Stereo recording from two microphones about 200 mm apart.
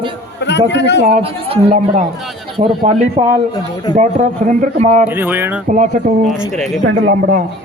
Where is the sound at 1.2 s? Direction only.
30° right (ahead or behind).